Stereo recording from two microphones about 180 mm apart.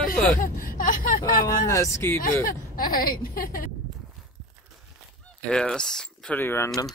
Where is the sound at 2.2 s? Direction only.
50° left (ahead or behind).